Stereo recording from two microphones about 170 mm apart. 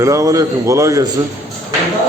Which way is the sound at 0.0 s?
15° right (ahead or behind).